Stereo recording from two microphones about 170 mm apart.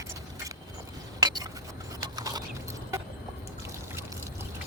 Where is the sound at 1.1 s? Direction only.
25° right (ahead or behind).